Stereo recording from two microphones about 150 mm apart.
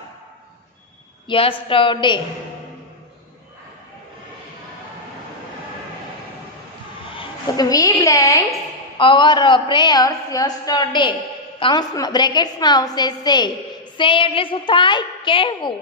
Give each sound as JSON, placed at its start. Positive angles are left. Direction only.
{"t": 1.2, "sound": "a woman's voice", "side_deg": 35}
{"t": 7.2, "sound": "music", "side_deg": 25}
{"t": 8.9, "sound": "a woman's voice", "side_deg": 35}